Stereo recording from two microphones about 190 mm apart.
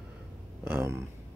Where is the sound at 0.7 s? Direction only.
10° right (ahead or behind).